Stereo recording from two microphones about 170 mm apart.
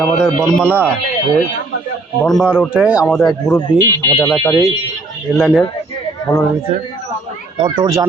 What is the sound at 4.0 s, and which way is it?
Speech, 20° left (ahead or behind).